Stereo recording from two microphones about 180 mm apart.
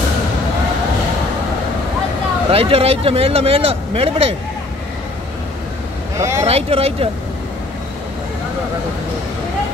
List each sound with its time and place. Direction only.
2.5 s speech: 30° right (ahead or behind)
6.1 s vehicle: 15° right (ahead or behind)
6.4 s speech: 35° right (ahead or behind)